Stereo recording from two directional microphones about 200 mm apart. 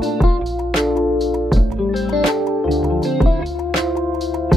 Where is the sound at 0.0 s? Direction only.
Centre (ahead or behind).